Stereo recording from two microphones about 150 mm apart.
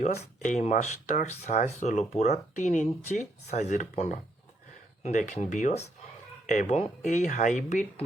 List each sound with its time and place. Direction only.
0.0 s speech: 50° left (ahead or behind)